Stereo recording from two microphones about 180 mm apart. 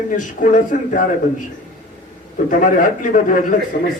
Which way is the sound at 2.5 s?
45° left (ahead or behind).